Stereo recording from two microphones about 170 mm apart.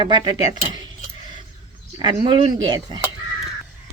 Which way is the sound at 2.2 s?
25° right (ahead or behind).